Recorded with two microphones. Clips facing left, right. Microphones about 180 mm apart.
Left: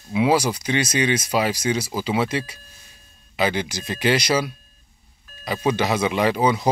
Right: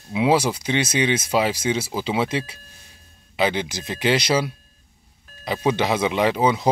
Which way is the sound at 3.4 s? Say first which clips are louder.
Right 1 dB; 25° right (ahead or behind).